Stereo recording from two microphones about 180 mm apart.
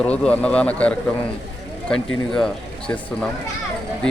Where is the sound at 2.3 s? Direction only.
5° left (ahead or behind).